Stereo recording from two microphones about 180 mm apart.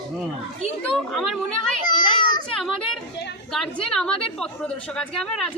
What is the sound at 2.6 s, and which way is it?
A woman's voice, centre (ahead or behind).